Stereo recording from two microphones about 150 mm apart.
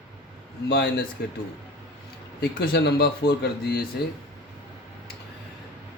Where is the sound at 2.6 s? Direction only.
90° left.